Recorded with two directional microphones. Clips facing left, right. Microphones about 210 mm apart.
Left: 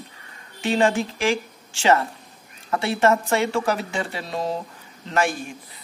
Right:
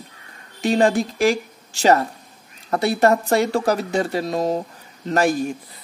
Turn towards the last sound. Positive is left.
turn(degrees=-40)  # may be behind; listen again after turning